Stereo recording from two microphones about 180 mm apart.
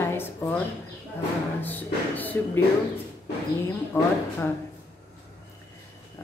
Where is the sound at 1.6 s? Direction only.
10° left (ahead or behind).